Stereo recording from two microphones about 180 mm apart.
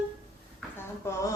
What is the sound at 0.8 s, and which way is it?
Speech, 15° left (ahead or behind).